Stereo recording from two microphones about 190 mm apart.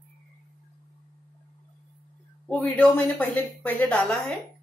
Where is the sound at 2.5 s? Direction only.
5° left (ahead or behind).